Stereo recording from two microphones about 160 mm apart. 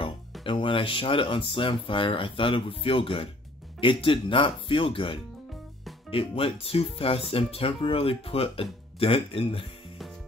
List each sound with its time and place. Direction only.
0.0 s speech: 30° left (ahead or behind)